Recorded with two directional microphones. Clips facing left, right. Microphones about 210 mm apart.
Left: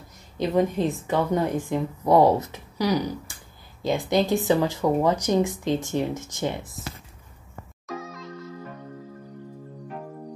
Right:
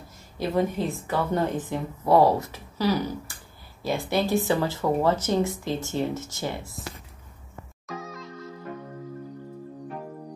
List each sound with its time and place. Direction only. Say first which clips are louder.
0.4 s a woman's voice: left 3 dB; 15° left (ahead or behind)
7.8 s music: left 2 dB; centre (ahead or behind)